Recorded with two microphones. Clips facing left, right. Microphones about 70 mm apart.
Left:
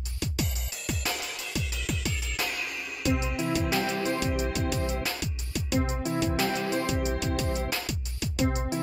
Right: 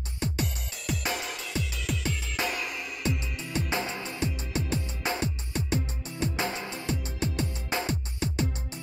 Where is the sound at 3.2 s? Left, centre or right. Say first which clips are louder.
Left 8 dB; centre.